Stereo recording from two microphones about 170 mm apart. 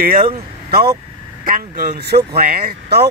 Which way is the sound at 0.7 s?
65° right (ahead or behind).